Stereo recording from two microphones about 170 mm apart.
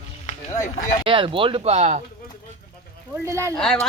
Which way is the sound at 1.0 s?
30° right (ahead or behind).